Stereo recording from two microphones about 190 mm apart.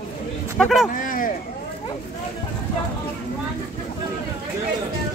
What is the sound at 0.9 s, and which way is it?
Speech, 45° left (ahead or behind).